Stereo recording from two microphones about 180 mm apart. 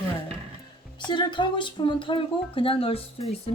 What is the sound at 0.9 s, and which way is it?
Chopping, 25° left (ahead or behind).